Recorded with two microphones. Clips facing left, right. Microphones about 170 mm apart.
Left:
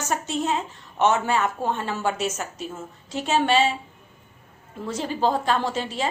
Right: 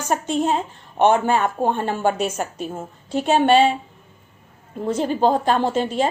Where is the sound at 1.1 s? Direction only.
40° right (ahead or behind).